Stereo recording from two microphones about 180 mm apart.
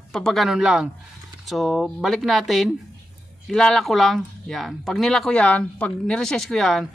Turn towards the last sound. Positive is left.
turn(degrees=0)  # may be behind; listen again after turning